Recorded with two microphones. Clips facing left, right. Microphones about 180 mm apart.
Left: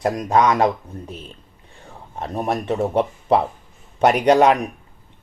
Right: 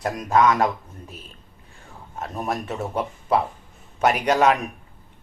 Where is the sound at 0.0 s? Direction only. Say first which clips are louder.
Left 2 dB; 30° left (ahead or behind).